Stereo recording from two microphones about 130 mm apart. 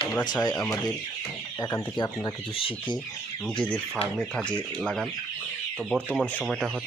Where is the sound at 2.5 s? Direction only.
45° left (ahead or behind).